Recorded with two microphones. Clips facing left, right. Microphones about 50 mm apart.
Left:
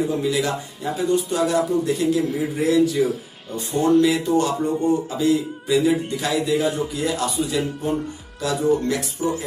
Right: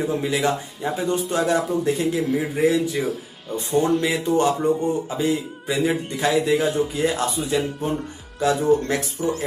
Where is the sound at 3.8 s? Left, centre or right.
Centre.